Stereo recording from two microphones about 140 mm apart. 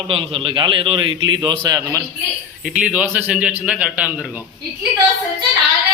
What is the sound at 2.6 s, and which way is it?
A man's voice, 5° right (ahead or behind).